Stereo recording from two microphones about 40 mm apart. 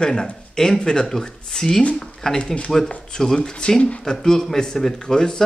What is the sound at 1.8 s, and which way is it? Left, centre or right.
Speech, left.